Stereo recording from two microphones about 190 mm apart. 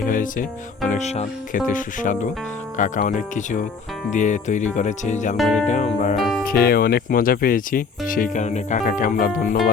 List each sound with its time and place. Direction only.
0.0 s music: 45° left (ahead or behind)
0.9 s speech: 35° left (ahead or behind)
5.4 s speech: centre (ahead or behind)
5.6 s speech: 40° left (ahead or behind)
6.1 s speech: centre (ahead or behind)
6.4 s speech: 50° left (ahead or behind)